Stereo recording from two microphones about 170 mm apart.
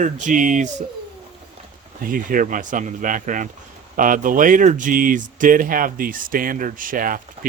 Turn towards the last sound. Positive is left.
turn(degrees=-55)  # may be behind; listen again after turning